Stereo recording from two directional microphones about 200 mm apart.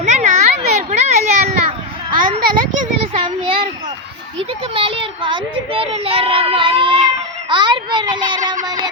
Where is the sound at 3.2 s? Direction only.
25° right (ahead or behind).